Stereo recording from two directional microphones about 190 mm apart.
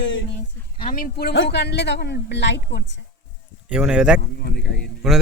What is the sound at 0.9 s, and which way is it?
Speech, 50° left (ahead or behind).